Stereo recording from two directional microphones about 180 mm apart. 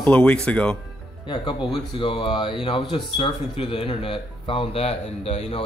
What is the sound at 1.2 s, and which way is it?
Speech, 25° left (ahead or behind).